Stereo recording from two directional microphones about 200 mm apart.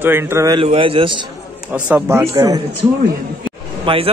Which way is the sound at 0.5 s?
25° right (ahead or behind).